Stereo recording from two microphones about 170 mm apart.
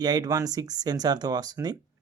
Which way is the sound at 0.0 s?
25° right (ahead or behind).